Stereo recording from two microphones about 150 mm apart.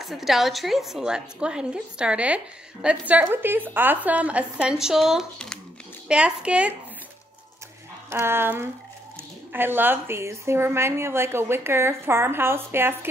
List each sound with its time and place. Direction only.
0.0 s a woman's voice: centre (ahead or behind)
8.1 s a woman's voice: 15° right (ahead or behind)